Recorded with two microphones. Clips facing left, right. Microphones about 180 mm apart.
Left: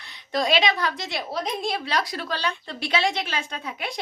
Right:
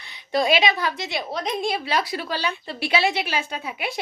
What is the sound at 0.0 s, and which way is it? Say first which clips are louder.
A woman's voice: right 3 dB; centre (ahead or behind).